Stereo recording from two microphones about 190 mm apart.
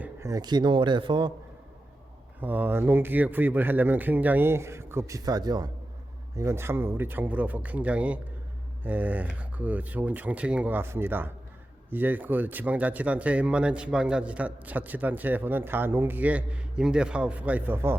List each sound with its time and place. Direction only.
0.0 s speech: 15° right (ahead or behind)
2.4 s speech: 10° right (ahead or behind)